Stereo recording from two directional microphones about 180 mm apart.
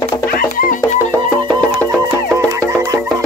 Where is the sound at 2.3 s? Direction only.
15° right (ahead or behind).